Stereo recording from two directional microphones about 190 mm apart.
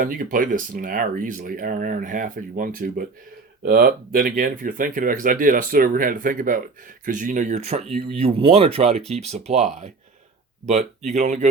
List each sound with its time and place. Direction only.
0.0 s speech: 45° right (ahead or behind)